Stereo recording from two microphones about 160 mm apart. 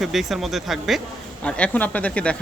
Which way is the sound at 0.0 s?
Centre (ahead or behind).